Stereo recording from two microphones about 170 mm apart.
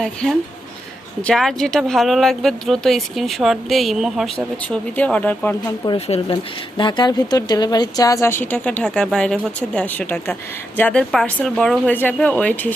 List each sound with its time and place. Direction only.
0.0 s speech: 5° left (ahead or behind)
6.1 s speech: 30° left (ahead or behind); by 12.7 s 10° left (ahead or behind)